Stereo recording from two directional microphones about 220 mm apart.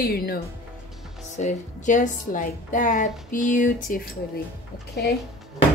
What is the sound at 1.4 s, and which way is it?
A woman's voice, 35° left (ahead or behind).